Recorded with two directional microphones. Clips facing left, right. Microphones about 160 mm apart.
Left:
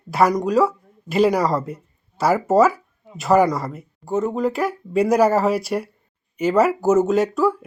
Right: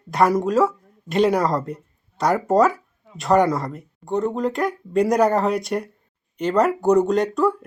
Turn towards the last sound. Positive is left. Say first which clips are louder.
# left 1 dB
turn(degrees=5)  # may be behind; listen again after turning